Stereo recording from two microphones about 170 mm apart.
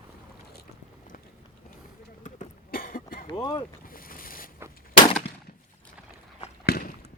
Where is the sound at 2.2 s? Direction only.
50° left (ahead or behind).